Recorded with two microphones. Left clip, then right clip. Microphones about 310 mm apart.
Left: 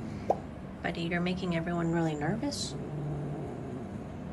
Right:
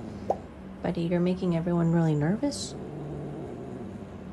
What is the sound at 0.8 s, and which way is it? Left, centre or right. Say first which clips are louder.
A woman's voice: right 4 dB; centre.